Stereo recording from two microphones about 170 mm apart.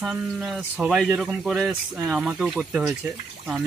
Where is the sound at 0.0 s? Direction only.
5° right (ahead or behind).